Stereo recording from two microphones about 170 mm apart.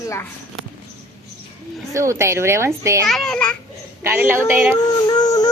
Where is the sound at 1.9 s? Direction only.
15° right (ahead or behind).